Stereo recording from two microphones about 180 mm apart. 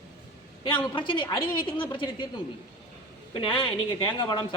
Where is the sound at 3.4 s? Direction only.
30° left (ahead or behind).